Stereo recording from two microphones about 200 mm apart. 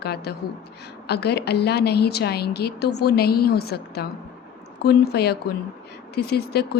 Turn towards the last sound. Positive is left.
turn(degrees=55)  # may be behind; listen again after turning